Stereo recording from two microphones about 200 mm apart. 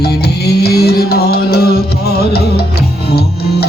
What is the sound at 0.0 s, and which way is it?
Music, 50° left (ahead or behind).